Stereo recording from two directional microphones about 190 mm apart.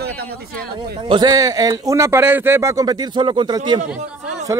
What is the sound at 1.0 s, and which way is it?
Speech, 25° right (ahead or behind).